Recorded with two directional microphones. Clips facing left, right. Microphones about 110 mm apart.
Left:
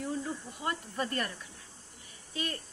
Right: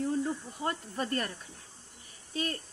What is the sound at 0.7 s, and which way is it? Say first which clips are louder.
Speech: right 1 dB; 35° right (ahead or behind).